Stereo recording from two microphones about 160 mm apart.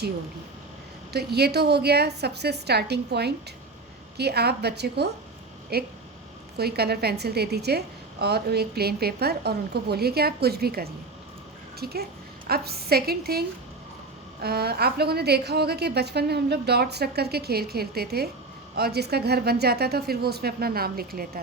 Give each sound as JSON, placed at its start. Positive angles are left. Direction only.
{"t": 1.1, "sound": "a woman's voice", "side_deg": -90}
{"t": 5.7, "sound": "a woman's voice", "side_deg": -80}
{"t": 14.4, "sound": "a woman's voice", "side_deg": -80}
{"t": 18.8, "sound": "a woman's voice", "side_deg": -90}